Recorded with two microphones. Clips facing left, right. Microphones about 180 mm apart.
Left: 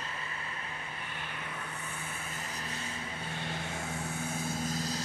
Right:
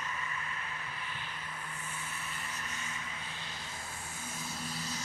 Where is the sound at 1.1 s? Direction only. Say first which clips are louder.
Left 3 dB; 70° left (ahead or behind); by 3.0 s 35° left (ahead or behind).